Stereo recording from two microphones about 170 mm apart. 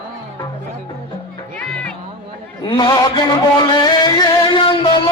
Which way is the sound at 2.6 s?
25° left (ahead or behind).